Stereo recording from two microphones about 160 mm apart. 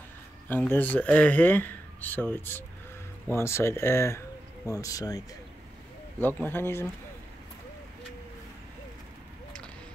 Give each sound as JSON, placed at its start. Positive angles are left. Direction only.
{"t": 0.5, "sound": "speech", "side_deg": 10}
{"t": 6.1, "sound": "speech", "side_deg": 10}